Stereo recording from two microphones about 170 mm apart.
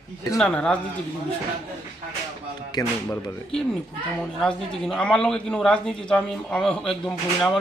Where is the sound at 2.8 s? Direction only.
25° left (ahead or behind).